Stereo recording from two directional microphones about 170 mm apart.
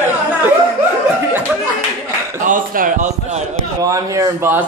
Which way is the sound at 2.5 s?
50° right (ahead or behind).